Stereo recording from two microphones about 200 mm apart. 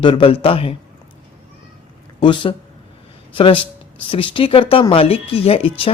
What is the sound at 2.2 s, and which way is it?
Speech, 25° left (ahead or behind).